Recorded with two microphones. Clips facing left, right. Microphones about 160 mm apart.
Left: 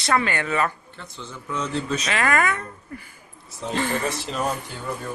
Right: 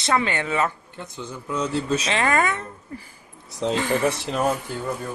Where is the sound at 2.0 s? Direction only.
25° right (ahead or behind).